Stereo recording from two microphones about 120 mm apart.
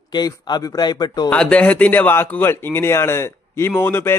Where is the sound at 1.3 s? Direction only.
10° left (ahead or behind).